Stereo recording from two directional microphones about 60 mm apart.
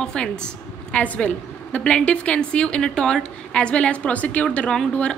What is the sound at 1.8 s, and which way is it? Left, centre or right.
Speech, centre.